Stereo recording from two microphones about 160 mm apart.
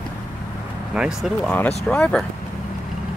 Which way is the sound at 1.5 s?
10° left (ahead or behind).